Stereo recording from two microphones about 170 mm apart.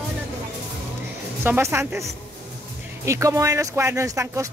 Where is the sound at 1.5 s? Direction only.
15° right (ahead or behind).